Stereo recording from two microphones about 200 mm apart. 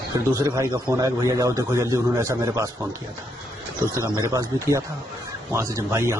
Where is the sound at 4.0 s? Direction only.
15° right (ahead or behind).